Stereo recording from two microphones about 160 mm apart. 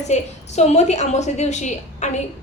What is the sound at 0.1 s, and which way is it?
A woman's voice, 45° left (ahead or behind).